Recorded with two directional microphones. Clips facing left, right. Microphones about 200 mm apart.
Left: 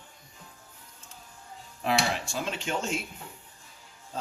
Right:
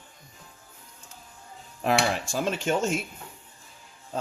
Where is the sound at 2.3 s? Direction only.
45° right (ahead or behind).